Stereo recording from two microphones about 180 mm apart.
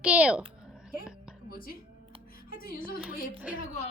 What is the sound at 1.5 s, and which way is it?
A woman's voice, 55° left (ahead or behind).